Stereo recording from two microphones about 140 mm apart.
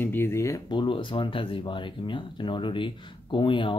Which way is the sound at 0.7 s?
35° left (ahead or behind).